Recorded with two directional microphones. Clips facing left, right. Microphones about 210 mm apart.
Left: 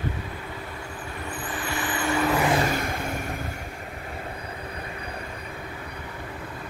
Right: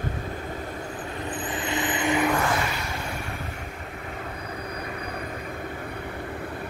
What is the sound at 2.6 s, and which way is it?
Vehicle, 50° left (ahead or behind).